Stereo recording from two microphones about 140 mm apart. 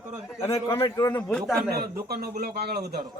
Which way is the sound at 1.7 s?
90° right.